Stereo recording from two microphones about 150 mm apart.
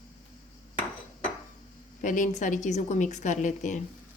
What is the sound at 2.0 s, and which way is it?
A woman's voice, 60° left (ahead or behind).